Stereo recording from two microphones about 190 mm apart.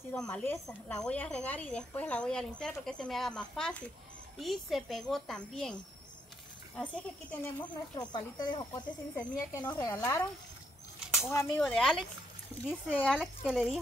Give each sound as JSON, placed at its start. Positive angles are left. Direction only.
{"t": 0.1, "sound": "a woman's voice", "side_deg": 5}
{"t": 8.1, "sound": "a woman's voice", "side_deg": 20}
{"t": 11.2, "sound": "a woman's voice", "side_deg": 10}
{"t": 13.5, "sound": "speech", "side_deg": -5}